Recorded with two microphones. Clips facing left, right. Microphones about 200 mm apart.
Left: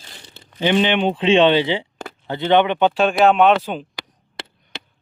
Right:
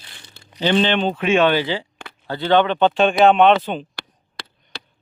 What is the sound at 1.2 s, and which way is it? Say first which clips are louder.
Speech: left 4 dB; 25° left (ahead or behind).